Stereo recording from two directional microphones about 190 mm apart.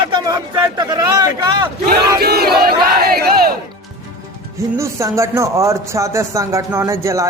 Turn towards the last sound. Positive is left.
turn(degrees=-15)  # may be behind; listen again after turning